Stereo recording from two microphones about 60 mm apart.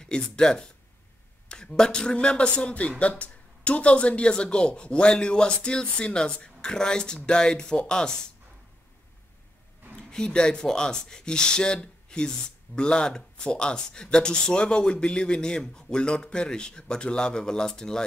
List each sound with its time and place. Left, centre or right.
0.0 s speech: centre
9.9 s speech: centre